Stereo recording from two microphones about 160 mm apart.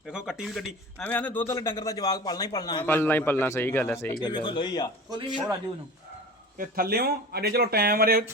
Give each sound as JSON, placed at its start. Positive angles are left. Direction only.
{"t": 0.1, "sound": "speech", "side_deg": -5}
{"t": 1.0, "sound": "a man's voice", "side_deg": 10}
{"t": 2.8, "sound": "a man's voice", "side_deg": 15}
{"t": 4.2, "sound": "a man's voice", "side_deg": 30}
{"t": 6.6, "sound": "speech", "side_deg": -70}